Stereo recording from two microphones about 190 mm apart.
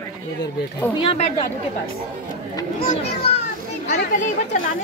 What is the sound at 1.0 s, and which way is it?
Speech, 25° left (ahead or behind).